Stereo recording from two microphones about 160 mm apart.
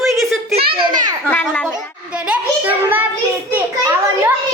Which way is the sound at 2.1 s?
5° right (ahead or behind).